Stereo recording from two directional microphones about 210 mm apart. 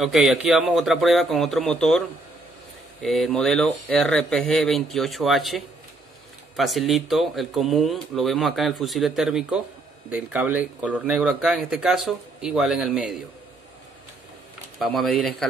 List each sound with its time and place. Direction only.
0.0 s speech: centre (ahead or behind)
15.0 s speech: centre (ahead or behind)